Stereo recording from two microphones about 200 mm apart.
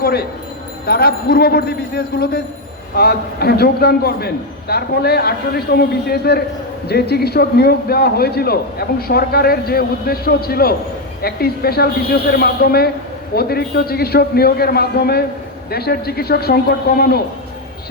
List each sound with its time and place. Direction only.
0.0 s a man's voice: 50° left (ahead or behind)